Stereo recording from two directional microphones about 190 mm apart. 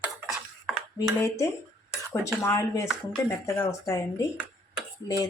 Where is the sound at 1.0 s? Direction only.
20° left (ahead or behind).